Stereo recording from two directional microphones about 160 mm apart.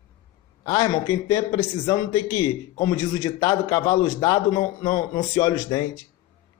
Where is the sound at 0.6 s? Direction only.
25° left (ahead or behind).